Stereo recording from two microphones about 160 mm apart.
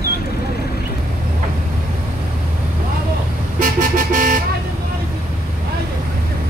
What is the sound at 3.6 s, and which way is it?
Vehicle, 60° right (ahead or behind).